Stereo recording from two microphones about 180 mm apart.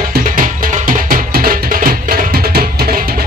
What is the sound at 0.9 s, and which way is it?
Music, 50° right (ahead or behind).